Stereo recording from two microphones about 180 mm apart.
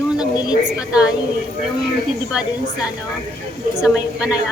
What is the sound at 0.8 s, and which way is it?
Speech, 5° right (ahead or behind).